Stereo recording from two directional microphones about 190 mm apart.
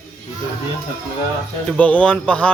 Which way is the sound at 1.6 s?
5° left (ahead or behind).